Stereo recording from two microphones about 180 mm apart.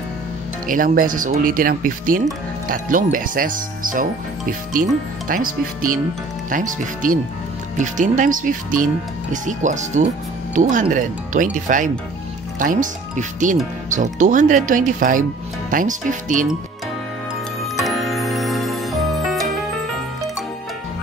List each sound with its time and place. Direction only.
0.7 s speech: 50° right (ahead or behind)
17.7 s music: centre (ahead or behind)